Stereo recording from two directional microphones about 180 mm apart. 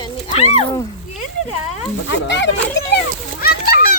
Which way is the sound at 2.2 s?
80° left.